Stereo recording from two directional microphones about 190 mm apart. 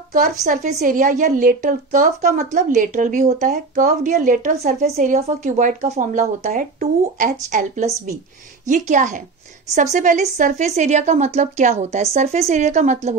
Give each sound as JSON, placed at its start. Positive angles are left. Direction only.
{"t": 0.5, "sound": "a woman's voice", "side_deg": -40}